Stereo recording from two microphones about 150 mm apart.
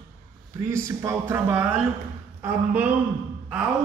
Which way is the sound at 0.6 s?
20° right (ahead or behind).